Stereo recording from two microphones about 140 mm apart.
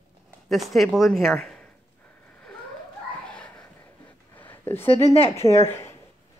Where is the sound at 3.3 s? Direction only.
10° left (ahead or behind).